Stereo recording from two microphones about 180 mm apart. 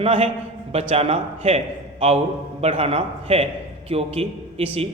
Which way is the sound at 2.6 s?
35° right (ahead or behind).